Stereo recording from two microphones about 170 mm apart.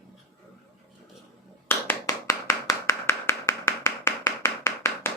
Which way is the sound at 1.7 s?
15° left (ahead or behind).